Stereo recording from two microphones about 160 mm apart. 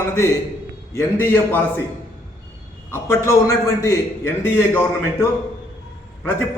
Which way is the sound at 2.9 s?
15° left (ahead or behind).